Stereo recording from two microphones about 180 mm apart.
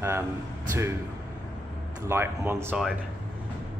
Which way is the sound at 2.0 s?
15° right (ahead or behind).